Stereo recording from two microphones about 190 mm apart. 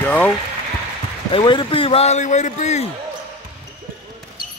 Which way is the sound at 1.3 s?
25° left (ahead or behind).